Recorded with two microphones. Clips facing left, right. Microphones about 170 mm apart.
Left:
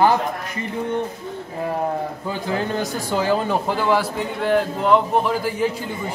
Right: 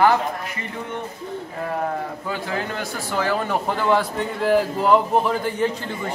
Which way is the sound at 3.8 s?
Centre (ahead or behind).